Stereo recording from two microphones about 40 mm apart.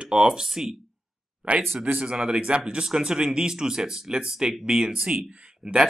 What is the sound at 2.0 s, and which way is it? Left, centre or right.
Speech, right.